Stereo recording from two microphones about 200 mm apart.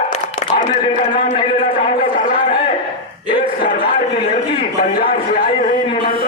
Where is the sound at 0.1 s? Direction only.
40° left (ahead or behind).